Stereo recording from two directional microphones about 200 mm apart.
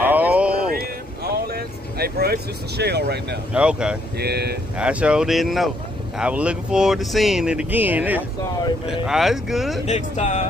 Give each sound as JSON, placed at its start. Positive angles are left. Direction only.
{"t": 0.0, "sound": "a sound", "side_deg": -10}
{"t": 1.3, "sound": "speech", "side_deg": -50}
{"t": 3.5, "sound": "speech", "side_deg": -5}
{"t": 4.2, "sound": "speech", "side_deg": -55}
{"t": 4.7, "sound": "speech", "side_deg": -5}
{"t": 9.8, "sound": "speech", "side_deg": 35}